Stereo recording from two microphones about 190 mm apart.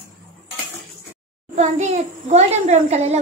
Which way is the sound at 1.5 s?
35° right (ahead or behind).